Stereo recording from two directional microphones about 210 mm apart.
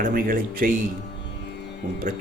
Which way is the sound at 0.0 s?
45° right (ahead or behind).